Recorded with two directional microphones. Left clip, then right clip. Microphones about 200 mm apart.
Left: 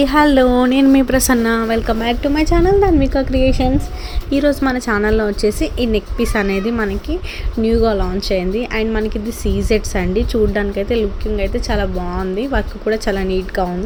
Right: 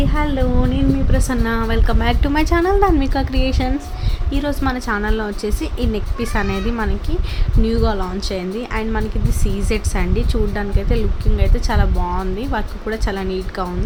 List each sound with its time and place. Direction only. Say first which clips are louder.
0.0 s a woman's voice: left 9 dB; 30° left (ahead or behind)
1.5 s a woman's voice: left 4 dB; 15° left (ahead or behind)
2.0 s a woman's voice: left 2 dB; centre (ahead or behind)
4.3 s a woman's voice: left 6 dB; 15° left (ahead or behind)